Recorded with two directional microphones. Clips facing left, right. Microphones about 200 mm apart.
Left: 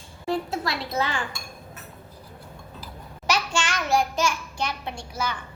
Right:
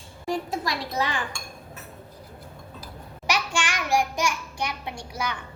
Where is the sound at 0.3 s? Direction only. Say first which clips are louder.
Left 1 dB; 15° right (ahead or behind).